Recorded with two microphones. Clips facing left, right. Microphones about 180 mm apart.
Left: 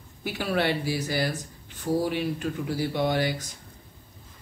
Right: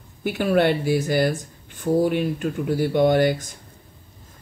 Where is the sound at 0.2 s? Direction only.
55° right (ahead or behind).